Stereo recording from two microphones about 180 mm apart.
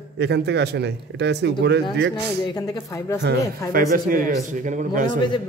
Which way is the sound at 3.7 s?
55° right (ahead or behind).